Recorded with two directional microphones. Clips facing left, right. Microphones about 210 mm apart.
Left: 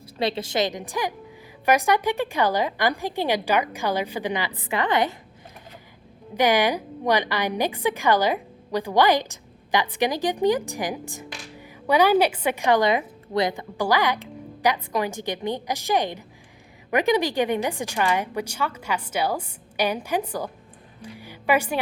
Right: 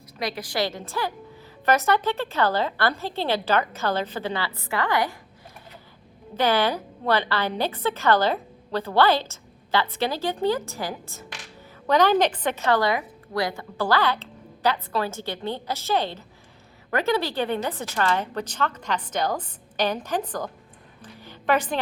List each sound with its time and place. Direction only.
0.2 s a woman's voice: 25° left (ahead or behind)
6.3 s a woman's voice: 15° left (ahead or behind)